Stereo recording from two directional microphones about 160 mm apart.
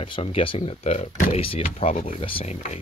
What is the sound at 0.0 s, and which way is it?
Speech, 35° left (ahead or behind).